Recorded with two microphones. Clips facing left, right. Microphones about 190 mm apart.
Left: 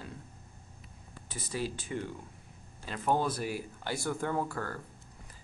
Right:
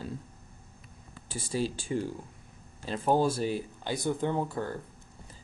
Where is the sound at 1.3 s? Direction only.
30° right (ahead or behind).